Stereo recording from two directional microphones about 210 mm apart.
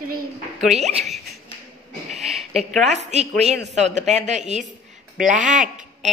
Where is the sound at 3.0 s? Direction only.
30° right (ahead or behind).